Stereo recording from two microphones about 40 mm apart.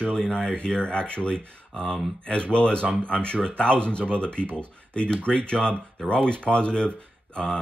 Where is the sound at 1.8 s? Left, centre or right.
Centre.